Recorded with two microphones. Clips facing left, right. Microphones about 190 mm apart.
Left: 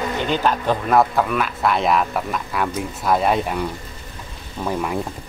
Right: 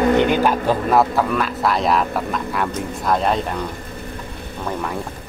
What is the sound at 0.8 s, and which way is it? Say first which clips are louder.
Speech: left 1 dB; centre (ahead or behind).